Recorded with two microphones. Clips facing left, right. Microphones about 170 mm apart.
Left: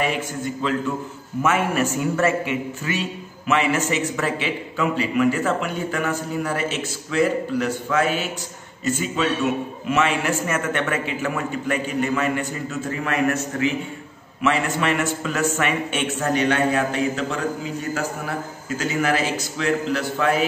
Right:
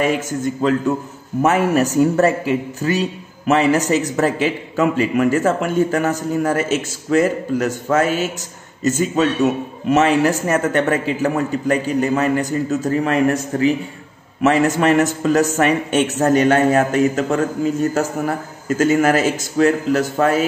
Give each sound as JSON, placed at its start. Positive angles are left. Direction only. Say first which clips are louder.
{"t": 0.6, "sound": "a man's voice", "louder": "right 6 dB", "side_deg": -45}
{"t": 18.8, "sound": "a man's voice", "louder": "right 7 dB", "side_deg": -45}